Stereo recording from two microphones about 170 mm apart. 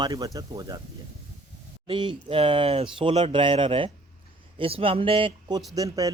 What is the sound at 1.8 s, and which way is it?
Speech, 30° right (ahead or behind).